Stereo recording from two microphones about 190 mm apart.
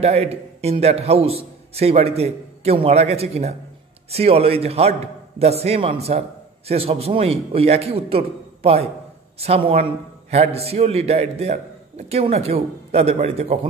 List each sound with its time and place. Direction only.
0.0 s a man's voice: 35° right (ahead or behind)